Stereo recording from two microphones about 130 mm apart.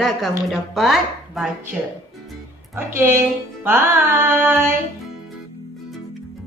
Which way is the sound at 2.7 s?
20° right (ahead or behind).